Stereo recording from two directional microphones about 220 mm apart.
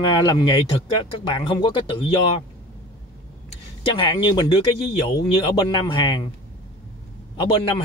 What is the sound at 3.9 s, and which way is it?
Speech, 20° left (ahead or behind).